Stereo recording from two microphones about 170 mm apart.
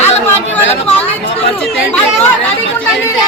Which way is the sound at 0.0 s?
40° left (ahead or behind).